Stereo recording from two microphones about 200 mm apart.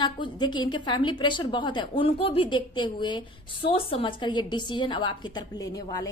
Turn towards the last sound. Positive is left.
turn(degrees=15)  # may be behind; listen again after turning